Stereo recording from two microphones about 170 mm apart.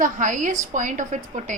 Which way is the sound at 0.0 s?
50° right (ahead or behind).